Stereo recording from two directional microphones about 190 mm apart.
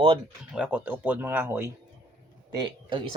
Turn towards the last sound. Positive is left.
turn(degrees=-25)  # may be behind; listen again after turning